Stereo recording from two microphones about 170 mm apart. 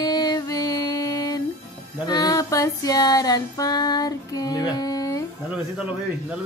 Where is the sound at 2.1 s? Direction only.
20° left (ahead or behind).